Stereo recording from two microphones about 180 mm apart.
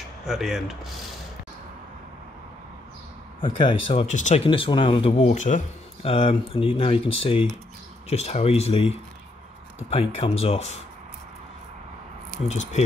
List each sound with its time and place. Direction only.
0.2 s mechanisms: centre (ahead or behind)
3.3 s speech: 25° left (ahead or behind)
4.5 s speech: 25° left (ahead or behind); by 5.6 s 45° left (ahead or behind)
6.0 s speech: 30° left (ahead or behind)